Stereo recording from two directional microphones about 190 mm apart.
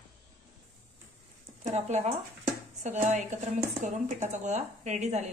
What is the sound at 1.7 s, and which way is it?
Speech, 35° right (ahead or behind).